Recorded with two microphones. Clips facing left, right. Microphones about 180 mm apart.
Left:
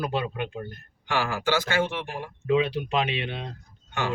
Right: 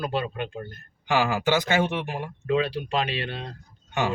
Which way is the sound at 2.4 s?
20° left (ahead or behind).